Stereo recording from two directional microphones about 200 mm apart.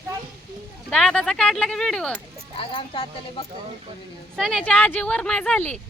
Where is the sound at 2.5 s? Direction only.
25° left (ahead or behind).